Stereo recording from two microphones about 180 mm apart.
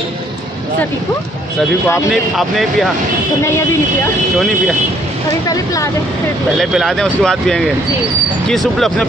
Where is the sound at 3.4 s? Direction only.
15° left (ahead or behind).